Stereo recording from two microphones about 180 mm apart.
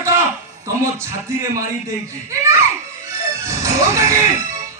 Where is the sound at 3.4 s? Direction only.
15° right (ahead or behind).